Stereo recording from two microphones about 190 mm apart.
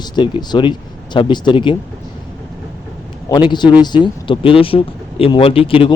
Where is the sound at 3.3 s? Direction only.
20° left (ahead or behind).